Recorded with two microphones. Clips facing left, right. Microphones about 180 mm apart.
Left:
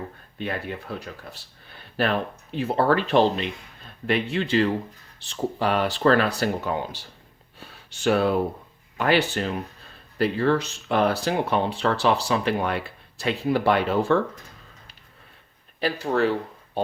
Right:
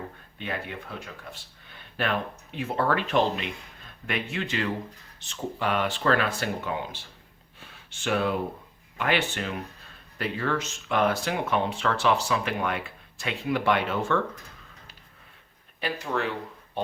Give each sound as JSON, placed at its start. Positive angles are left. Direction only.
{"t": 0.9, "sound": "speech", "side_deg": 35}
{"t": 7.6, "sound": "a sound", "side_deg": 40}
{"t": 9.0, "sound": "speech", "side_deg": 35}
{"t": 15.8, "sound": "speech", "side_deg": 35}